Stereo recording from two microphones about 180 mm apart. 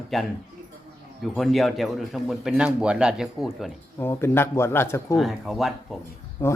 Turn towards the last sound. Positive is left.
turn(degrees=15)  # may be behind; listen again after turning